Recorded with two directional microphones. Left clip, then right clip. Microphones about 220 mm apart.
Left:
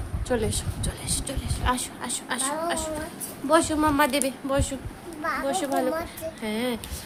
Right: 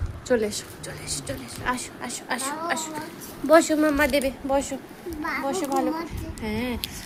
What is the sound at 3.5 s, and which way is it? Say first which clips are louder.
Speech: right 4 dB; 10° right (ahead or behind).